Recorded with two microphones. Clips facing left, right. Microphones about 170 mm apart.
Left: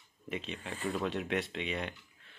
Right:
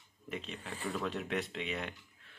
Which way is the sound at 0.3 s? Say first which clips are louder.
Left 3 dB; centre (ahead or behind).